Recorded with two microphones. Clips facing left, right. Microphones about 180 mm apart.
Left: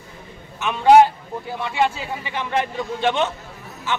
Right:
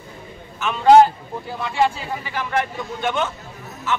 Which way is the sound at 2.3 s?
25° left (ahead or behind).